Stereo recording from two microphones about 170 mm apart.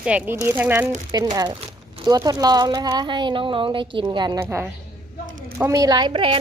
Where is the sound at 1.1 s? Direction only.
25° right (ahead or behind).